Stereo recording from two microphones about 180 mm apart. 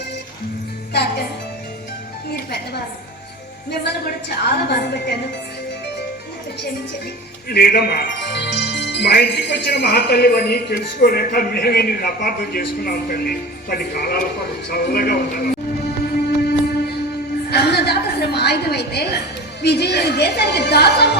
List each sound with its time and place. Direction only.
0.9 s music: 60° left (ahead or behind)
3.7 s speech: 65° left (ahead or behind)
7.5 s speech: 60° left (ahead or behind)
16.4 s a sound: 60° left (ahead or behind)
19.6 s speech: 65° left (ahead or behind)